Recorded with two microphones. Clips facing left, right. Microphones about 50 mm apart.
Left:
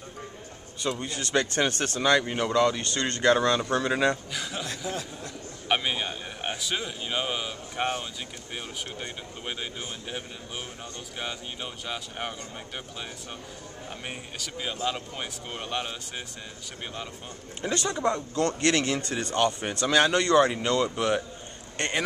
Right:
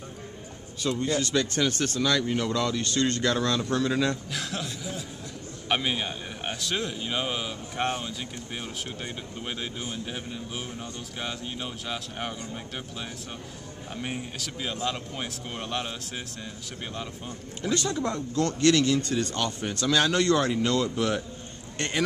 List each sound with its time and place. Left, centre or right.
0.8 s speech: left
4.3 s a man's voice: centre
4.6 s a sound: left
5.7 s a man's voice: centre
14.0 s a man's voice: centre
17.6 s speech: left